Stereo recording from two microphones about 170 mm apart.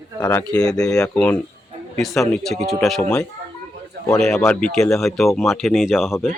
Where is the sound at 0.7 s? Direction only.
5° left (ahead or behind).